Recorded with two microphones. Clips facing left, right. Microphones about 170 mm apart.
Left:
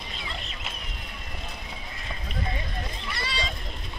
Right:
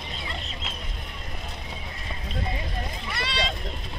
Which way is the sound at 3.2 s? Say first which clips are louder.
Right 4 dB; 65° right (ahead or behind).